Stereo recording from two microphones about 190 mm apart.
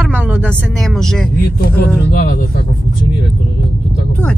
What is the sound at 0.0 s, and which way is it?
Vehicle, 5° right (ahead or behind).